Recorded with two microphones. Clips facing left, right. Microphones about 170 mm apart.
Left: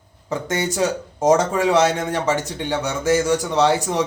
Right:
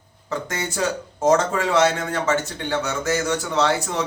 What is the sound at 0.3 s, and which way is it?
Speech, 20° left (ahead or behind).